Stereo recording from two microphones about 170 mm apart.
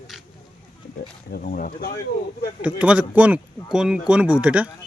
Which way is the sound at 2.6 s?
5° right (ahead or behind).